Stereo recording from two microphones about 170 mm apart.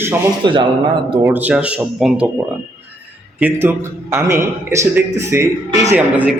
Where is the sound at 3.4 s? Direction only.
10° right (ahead or behind).